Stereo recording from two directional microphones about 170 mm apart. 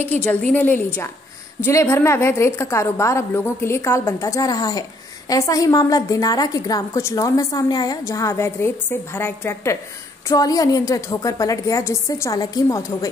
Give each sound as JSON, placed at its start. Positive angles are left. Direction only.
{"t": 0.0, "sound": "a woman's voice", "side_deg": 10}